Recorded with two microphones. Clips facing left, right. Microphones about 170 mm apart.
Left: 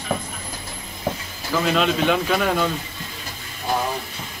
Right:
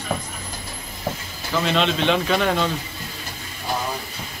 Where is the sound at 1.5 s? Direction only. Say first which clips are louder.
Left 1 dB; 5° left (ahead or behind).